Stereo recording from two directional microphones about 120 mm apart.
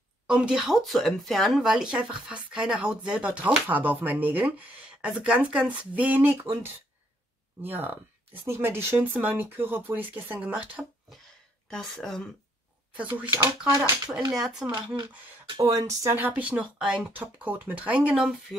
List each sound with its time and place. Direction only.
0.3 s speech: 5° right (ahead or behind)
7.6 s speech: 15° right (ahead or behind)
11.7 s speech: centre (ahead or behind)
12.9 s speech: 10° right (ahead or behind)
14.3 s speech: 5° right (ahead or behind)
15.5 s speech: 30° right (ahead or behind)
16.2 s speech: 15° right (ahead or behind)